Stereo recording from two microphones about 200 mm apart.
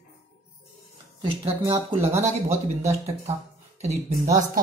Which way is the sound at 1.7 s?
15° right (ahead or behind).